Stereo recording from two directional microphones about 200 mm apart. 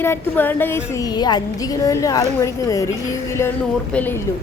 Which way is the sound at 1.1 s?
20° left (ahead or behind).